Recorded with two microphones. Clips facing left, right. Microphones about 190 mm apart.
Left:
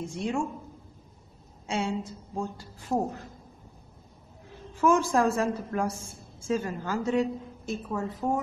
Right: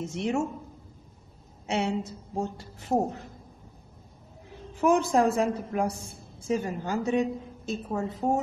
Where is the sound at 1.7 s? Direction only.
25° right (ahead or behind).